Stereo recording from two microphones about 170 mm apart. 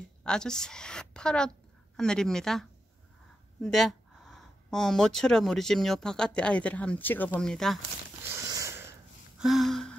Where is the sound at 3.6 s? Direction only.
Centre (ahead or behind).